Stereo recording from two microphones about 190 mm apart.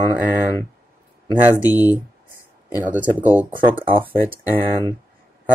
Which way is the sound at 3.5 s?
25° right (ahead or behind).